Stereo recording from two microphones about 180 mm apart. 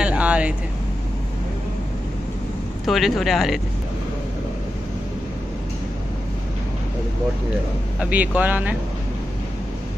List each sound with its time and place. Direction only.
0.0 s vehicle: 5° right (ahead or behind)
2.9 s speech: centre (ahead or behind)
8.0 s speech: 10° right (ahead or behind)